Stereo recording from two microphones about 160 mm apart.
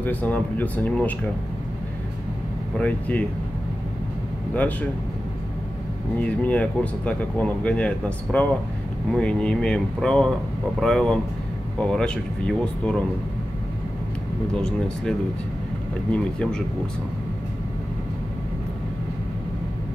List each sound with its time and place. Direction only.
0.0 s speech: 10° left (ahead or behind)
2.8 s speech: 10° left (ahead or behind)
6.1 s speech: 10° left (ahead or behind)
14.5 s speech: 5° left (ahead or behind)